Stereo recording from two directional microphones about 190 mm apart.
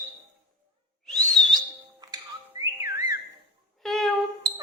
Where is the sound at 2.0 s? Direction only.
20° right (ahead or behind).